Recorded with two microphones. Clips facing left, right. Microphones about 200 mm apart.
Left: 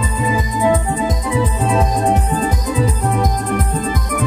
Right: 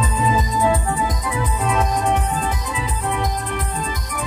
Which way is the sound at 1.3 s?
30° left (ahead or behind).